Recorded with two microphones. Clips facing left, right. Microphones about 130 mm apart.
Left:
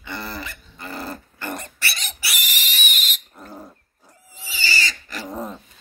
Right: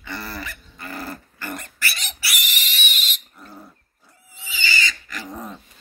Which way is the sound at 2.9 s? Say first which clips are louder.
Left 1 dB; 45° left (ahead or behind).